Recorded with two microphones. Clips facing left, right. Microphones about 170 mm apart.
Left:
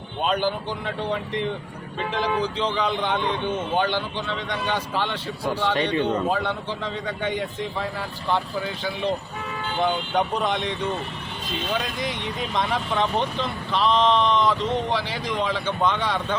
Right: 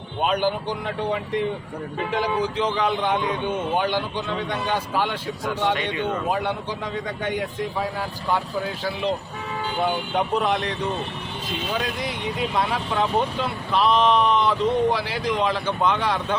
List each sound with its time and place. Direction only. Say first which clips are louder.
0.2 s speech: right 1 dB; 10° right (ahead or behind)
5.7 s a man's voice: left 3 dB; 35° left (ahead or behind)
6.3 s speech: even; 10° right (ahead or behind)